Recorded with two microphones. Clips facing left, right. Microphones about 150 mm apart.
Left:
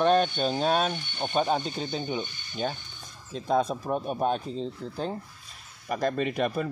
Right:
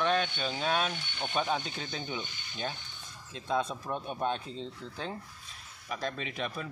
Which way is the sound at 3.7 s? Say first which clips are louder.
Left 7 dB; 35° left (ahead or behind).